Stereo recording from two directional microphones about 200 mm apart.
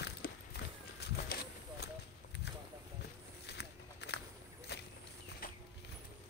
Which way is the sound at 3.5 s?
55° left (ahead or behind).